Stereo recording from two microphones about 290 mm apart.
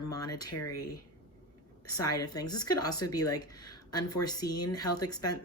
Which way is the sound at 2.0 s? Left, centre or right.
Centre.